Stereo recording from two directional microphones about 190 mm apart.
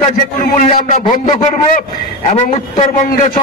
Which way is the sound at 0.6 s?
40° left (ahead or behind).